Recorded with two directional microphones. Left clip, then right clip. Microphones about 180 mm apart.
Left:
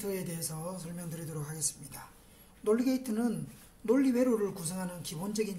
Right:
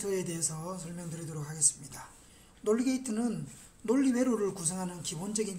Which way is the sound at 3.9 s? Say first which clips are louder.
Left 1 dB; 15° right (ahead or behind).